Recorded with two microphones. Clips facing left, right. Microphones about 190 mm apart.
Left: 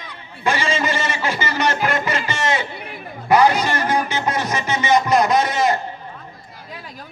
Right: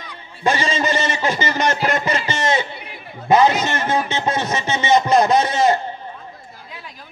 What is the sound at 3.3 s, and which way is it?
Music, 20° right (ahead or behind).